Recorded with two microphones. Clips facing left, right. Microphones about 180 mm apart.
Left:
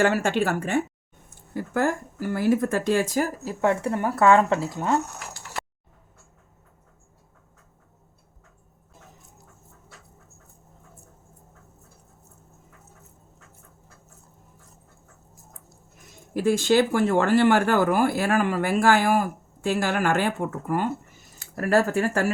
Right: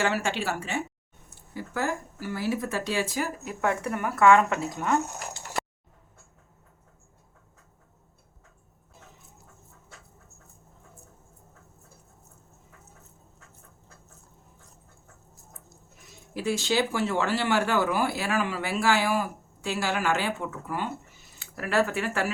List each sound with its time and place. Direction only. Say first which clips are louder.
0.0 s speech: left 6 dB; 50° left (ahead or behind); by 4.9 s 25° left (ahead or behind)
16.3 s speech: left 7 dB; 50° left (ahead or behind)